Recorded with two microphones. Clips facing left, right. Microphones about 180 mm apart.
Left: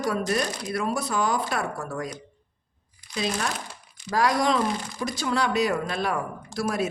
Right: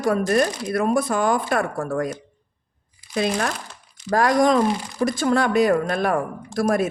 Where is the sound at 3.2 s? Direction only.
55° right (ahead or behind).